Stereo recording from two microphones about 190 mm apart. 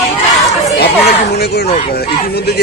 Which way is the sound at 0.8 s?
60° left (ahead or behind).